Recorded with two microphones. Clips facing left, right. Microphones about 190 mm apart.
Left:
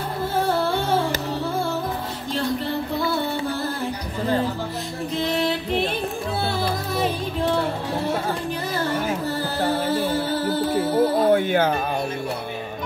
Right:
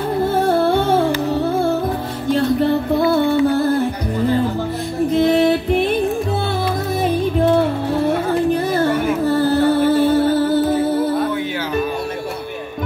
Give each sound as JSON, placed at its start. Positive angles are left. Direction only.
{"t": 0.3, "sound": "music", "side_deg": -55}
{"t": 3.0, "sound": "music", "side_deg": -55}
{"t": 5.1, "sound": "music", "side_deg": -55}
{"t": 7.0, "sound": "music", "side_deg": -50}
{"t": 8.5, "sound": "a sound", "side_deg": -50}
{"t": 9.8, "sound": "music", "side_deg": -55}
{"t": 11.3, "sound": "music", "side_deg": 50}